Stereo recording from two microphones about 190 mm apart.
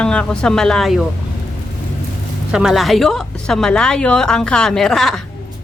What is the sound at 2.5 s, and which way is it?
A woman's voice, 5° right (ahead or behind).